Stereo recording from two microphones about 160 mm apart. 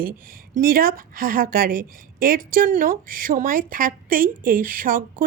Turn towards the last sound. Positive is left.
turn(degrees=-60)  # may be behind; listen again after turning